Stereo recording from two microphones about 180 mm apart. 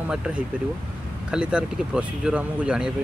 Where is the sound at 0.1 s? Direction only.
5° right (ahead or behind).